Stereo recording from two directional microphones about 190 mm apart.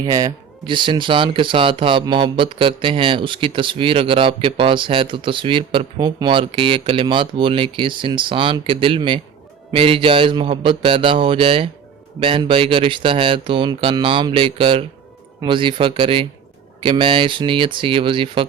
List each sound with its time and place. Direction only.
0.0 s speech: 20° right (ahead or behind)